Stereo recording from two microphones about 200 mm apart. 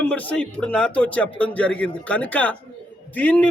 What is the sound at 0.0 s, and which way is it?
A man's voice, 5° left (ahead or behind).